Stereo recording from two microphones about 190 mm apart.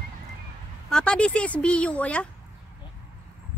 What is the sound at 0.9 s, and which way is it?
Speech, 5° left (ahead or behind).